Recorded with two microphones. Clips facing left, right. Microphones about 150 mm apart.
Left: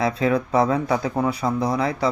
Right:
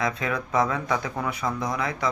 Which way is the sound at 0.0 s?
30° left (ahead or behind).